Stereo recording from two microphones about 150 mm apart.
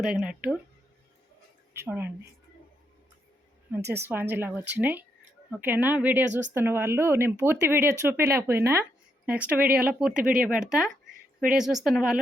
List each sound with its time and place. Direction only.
0.0 s speech: 5° right (ahead or behind)
1.7 s speech: 15° right (ahead or behind)
3.8 s speech: 15° right (ahead or behind)